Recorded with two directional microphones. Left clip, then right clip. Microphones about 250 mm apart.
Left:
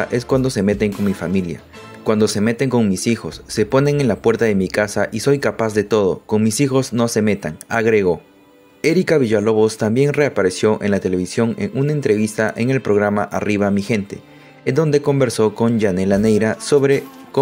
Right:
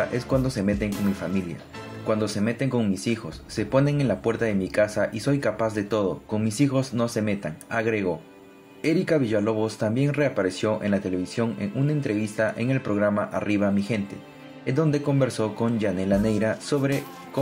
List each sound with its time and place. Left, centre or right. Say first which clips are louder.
0.1 s speech: left 8 dB; left